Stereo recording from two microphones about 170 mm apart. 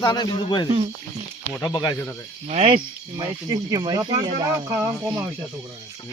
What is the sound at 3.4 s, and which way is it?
Speech, 25° right (ahead or behind).